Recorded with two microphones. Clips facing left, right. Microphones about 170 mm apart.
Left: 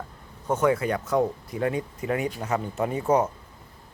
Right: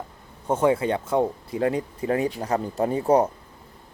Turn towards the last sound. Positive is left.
turn(degrees=-35)  # may be behind; listen again after turning